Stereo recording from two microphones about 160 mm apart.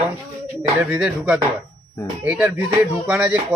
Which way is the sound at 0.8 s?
10° right (ahead or behind).